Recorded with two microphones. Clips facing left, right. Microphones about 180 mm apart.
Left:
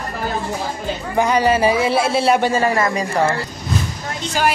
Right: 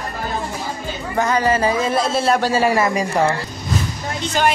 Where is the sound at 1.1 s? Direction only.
15° left (ahead or behind).